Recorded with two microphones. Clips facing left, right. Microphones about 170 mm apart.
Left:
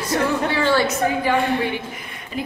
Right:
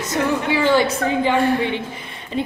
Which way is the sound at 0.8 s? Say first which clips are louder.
Right 1 dB; 30° right (ahead or behind).